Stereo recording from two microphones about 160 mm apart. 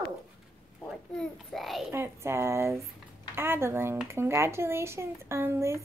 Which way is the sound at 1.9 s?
15° right (ahead or behind).